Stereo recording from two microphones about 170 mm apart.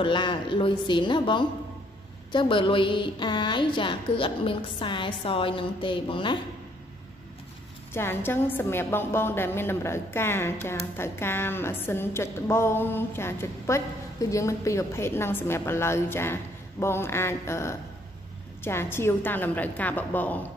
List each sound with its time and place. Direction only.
0.0 s a woman's voice: 30° left (ahead or behind)
7.9 s a woman's voice: 15° left (ahead or behind)